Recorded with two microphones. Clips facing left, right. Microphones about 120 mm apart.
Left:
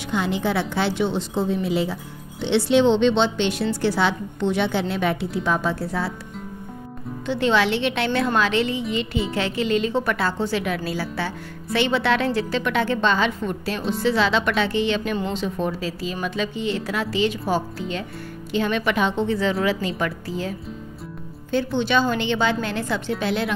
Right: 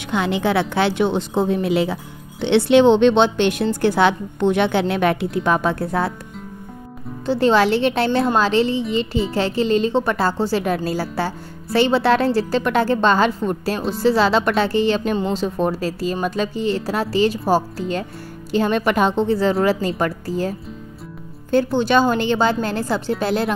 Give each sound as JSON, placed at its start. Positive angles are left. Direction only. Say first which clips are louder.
{"t": 0.1, "sound": "a woman's voice", "louder": "right 4 dB", "side_deg": -75}
{"t": 7.2, "sound": "speech", "louder": "right 5 dB", "side_deg": -40}